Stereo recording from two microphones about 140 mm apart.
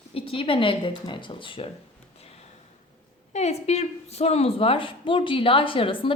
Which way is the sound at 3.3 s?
50° left (ahead or behind).